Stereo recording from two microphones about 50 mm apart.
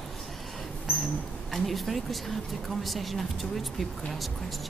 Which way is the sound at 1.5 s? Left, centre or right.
Centre.